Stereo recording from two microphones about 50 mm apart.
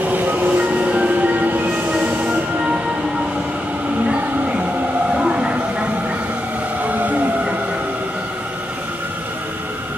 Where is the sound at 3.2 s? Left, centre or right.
Right.